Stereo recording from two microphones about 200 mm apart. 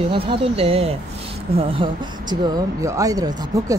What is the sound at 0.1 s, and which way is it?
Speech, 25° right (ahead or behind).